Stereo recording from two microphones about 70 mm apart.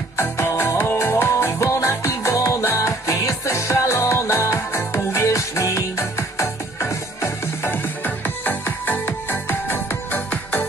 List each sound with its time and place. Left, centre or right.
0.2 s music: left